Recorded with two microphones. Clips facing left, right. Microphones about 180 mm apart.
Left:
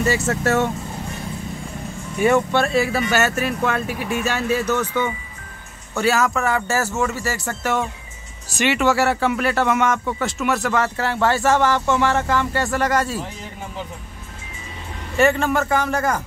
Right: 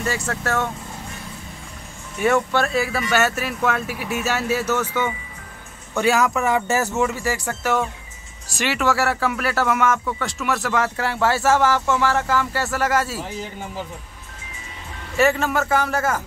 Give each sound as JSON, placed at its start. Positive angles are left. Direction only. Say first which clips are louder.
{"t": 0.0, "sound": "speech", "louder": "left 5 dB", "side_deg": 5}
{"t": 0.3, "sound": "speech", "louder": "left 4 dB", "side_deg": 25}
{"t": 2.5, "sound": "speech", "louder": "left 2 dB", "side_deg": 0}
{"t": 8.5, "sound": "speech", "louder": "left 3 dB", "side_deg": 0}
{"t": 15.1, "sound": "speech", "louder": "left 1 dB", "side_deg": -5}